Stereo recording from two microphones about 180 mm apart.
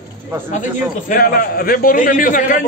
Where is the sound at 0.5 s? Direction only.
45° left (ahead or behind).